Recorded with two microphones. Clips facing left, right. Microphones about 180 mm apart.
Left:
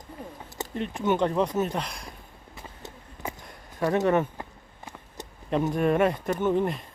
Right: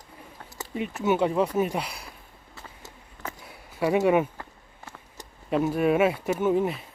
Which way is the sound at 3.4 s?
5° right (ahead or behind).